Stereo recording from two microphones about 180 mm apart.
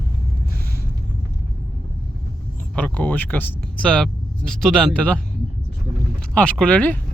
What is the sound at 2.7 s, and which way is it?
Speech, 5° left (ahead or behind).